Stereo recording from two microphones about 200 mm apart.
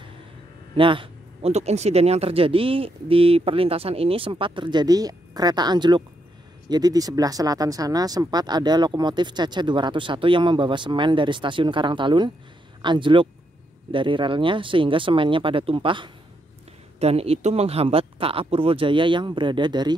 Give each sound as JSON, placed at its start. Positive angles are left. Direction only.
{"t": 0.7, "sound": "speech", "side_deg": -25}